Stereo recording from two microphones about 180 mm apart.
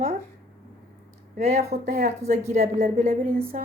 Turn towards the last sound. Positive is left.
turn(degrees=-45)  # may be behind; listen again after turning